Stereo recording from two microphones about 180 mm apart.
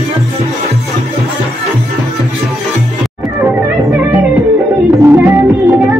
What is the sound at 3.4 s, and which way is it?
Music, 10° right (ahead or behind).